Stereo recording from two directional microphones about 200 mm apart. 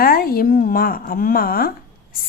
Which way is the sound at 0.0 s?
50° left (ahead or behind).